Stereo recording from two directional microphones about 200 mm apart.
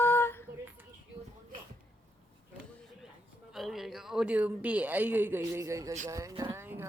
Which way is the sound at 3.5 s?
Centre (ahead or behind).